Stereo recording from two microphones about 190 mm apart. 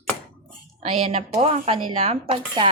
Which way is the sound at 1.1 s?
30° right (ahead or behind).